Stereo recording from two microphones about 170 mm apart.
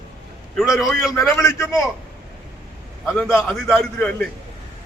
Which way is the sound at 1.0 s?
20° left (ahead or behind).